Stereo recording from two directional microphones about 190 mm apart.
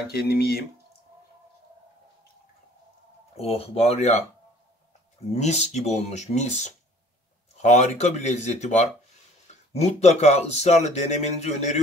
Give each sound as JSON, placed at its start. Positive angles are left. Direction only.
{"t": 0.1, "sound": "speech", "side_deg": 60}
{"t": 3.3, "sound": "speech", "side_deg": 30}
{"t": 5.3, "sound": "speech", "side_deg": 35}